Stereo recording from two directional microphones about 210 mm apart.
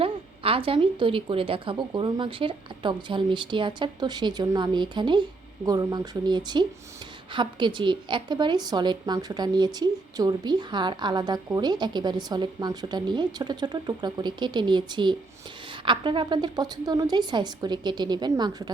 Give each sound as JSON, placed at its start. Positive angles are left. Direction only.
{"t": 0.0, "sound": "a woman's voice", "side_deg": -25}